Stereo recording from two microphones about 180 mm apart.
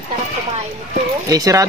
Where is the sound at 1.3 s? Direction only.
20° right (ahead or behind).